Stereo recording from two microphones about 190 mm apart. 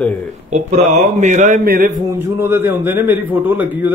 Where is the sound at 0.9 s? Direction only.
40° right (ahead or behind).